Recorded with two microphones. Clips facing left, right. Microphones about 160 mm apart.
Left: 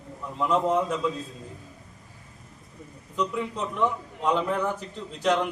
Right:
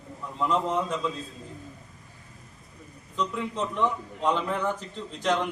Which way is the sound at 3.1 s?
5° left (ahead or behind).